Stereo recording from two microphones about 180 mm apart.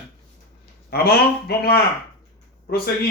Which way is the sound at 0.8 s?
60° left (ahead or behind).